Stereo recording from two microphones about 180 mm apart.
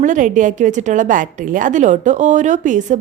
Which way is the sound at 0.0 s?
45° right (ahead or behind).